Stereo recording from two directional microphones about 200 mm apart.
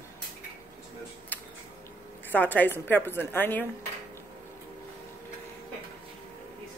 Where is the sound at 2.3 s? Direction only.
10° left (ahead or behind).